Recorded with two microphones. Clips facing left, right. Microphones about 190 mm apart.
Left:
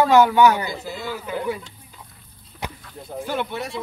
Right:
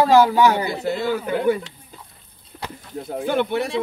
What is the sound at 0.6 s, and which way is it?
A man's voice, 65° right (ahead or behind).